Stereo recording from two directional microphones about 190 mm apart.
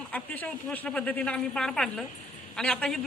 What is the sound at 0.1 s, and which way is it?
A woman's voice, 10° left (ahead or behind).